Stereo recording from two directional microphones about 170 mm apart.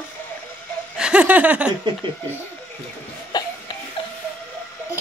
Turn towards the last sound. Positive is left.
turn(degrees=25)  # may be behind; listen again after turning